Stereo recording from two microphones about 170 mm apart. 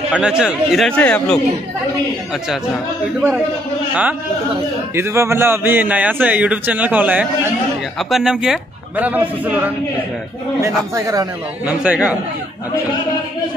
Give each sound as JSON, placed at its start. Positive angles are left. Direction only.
{"t": 0.1, "sound": "speech", "side_deg": -5}
{"t": 4.9, "sound": "a man's voice", "side_deg": -15}
{"t": 11.0, "sound": "speech", "side_deg": -20}
{"t": 11.6, "sound": "a man's voice", "side_deg": -5}